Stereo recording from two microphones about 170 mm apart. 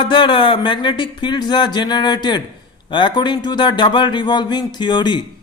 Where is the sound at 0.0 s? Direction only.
30° left (ahead or behind).